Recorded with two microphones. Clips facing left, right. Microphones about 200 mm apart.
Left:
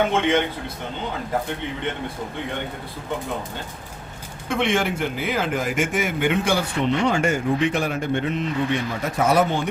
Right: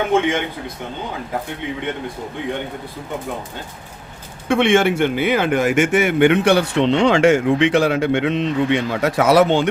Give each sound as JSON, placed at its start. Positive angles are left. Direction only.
{"t": 4.4, "sound": "speech", "side_deg": -75}